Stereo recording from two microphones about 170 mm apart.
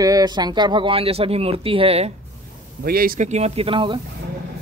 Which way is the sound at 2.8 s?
65° right (ahead or behind).